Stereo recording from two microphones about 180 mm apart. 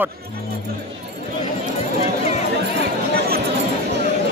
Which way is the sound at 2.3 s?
40° left (ahead or behind).